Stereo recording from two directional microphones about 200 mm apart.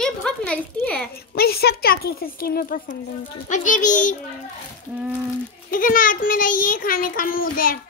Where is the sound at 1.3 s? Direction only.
50° left (ahead or behind).